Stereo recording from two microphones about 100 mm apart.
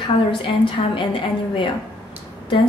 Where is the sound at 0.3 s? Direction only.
60° left (ahead or behind).